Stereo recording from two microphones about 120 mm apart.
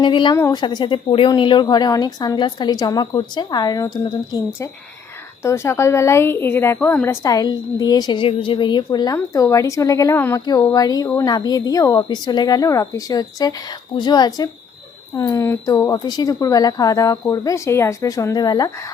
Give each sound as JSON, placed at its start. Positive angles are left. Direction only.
{"t": 0.0, "sound": "a woman's voice", "side_deg": 40}
{"t": 5.4, "sound": "a woman's voice", "side_deg": 25}
{"t": 8.2, "sound": "a woman's voice", "side_deg": 45}
{"t": 10.2, "sound": "speech", "side_deg": 15}
{"t": 10.7, "sound": "a woman's voice", "side_deg": 30}